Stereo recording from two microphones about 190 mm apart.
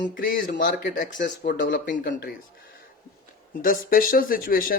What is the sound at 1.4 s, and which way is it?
Speech, 70° left (ahead or behind).